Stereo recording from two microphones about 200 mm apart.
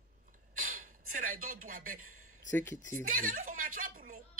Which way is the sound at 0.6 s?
40° right (ahead or behind).